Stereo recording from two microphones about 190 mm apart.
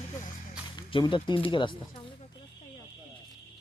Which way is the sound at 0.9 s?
25° left (ahead or behind).